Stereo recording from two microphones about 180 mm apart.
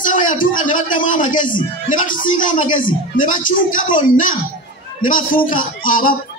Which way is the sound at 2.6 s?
25° left (ahead or behind).